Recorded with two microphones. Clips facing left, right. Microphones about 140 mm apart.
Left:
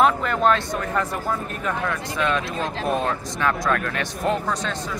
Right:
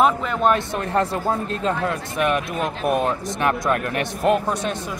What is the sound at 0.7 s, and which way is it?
Speech, 30° right (ahead or behind).